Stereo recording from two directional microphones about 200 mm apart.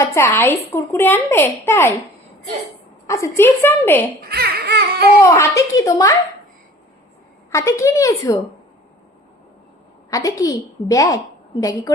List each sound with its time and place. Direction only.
0.0 s speech: 15° left (ahead or behind)
3.1 s speech: 15° left (ahead or behind)
4.2 s baby cry: 50° right (ahead or behind)
5.2 s speech: 15° left (ahead or behind)
7.5 s speech: 15° left (ahead or behind)
10.1 s speech: 15° left (ahead or behind)